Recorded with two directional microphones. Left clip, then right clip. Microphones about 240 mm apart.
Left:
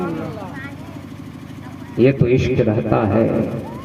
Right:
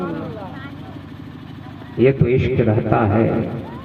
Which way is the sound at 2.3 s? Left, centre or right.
Left.